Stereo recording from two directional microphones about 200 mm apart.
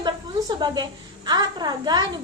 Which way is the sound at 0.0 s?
20° right (ahead or behind).